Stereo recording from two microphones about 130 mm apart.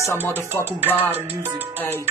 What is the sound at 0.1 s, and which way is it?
Music, 20° right (ahead or behind).